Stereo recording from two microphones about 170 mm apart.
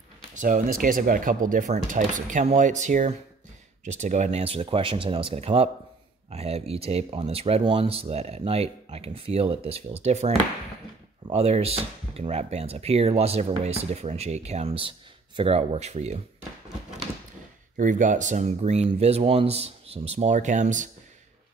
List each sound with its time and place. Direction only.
0.3 s speech: 50° right (ahead or behind)
17.7 s speech: 50° right (ahead or behind)